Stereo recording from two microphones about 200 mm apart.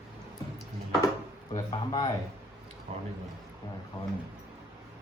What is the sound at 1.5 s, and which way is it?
Speech, 20° left (ahead or behind).